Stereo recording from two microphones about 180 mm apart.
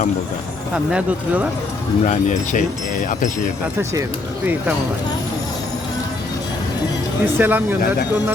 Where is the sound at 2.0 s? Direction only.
45° left (ahead or behind).